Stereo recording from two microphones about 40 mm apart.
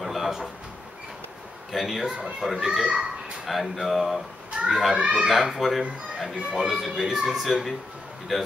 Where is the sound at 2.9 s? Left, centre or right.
Right.